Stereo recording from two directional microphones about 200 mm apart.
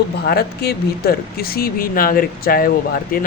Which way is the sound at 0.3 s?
50° left (ahead or behind).